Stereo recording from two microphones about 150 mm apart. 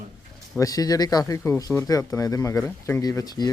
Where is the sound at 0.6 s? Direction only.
25° left (ahead or behind).